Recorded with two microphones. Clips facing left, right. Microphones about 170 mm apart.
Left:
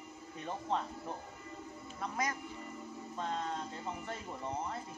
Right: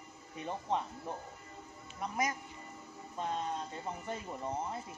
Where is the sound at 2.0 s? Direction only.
20° right (ahead or behind).